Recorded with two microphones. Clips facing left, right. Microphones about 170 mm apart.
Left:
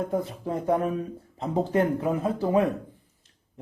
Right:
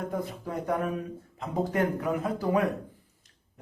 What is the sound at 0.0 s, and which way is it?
Speech, 25° left (ahead or behind).